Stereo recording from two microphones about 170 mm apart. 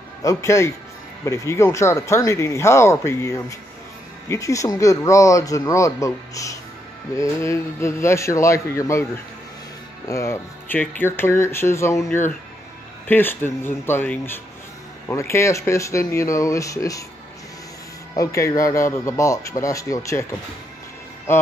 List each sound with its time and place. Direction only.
0.2 s speech: 20° left (ahead or behind)
18.1 s speech: 20° left (ahead or behind)
21.3 s speech: 15° left (ahead or behind)